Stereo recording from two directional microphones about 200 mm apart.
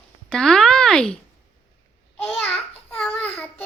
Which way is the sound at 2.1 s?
5° left (ahead or behind).